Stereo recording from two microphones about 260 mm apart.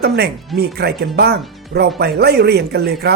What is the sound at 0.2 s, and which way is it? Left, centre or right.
Speech, right.